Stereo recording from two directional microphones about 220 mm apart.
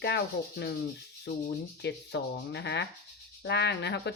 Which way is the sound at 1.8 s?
50° left (ahead or behind).